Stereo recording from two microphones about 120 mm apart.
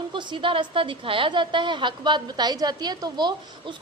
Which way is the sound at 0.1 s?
40° right (ahead or behind).